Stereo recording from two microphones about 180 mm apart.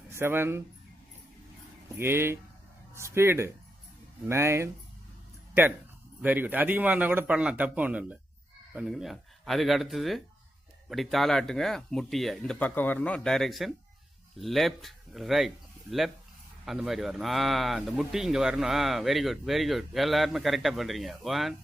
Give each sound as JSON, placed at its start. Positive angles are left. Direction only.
{"t": 0.1, "sound": "speech", "side_deg": -15}
{"t": 2.0, "sound": "a man's voice", "side_deg": -15}
{"t": 6.2, "sound": "a man's voice", "side_deg": -10}